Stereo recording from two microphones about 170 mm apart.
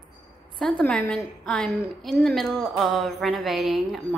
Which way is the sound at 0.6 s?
5° left (ahead or behind).